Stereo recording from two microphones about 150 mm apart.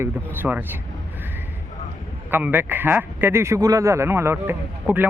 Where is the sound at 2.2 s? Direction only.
15° right (ahead or behind).